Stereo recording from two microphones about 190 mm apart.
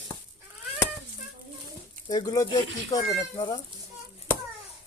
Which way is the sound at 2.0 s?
20° left (ahead or behind).